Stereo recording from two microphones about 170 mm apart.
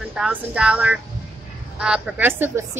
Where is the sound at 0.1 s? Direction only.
5° right (ahead or behind).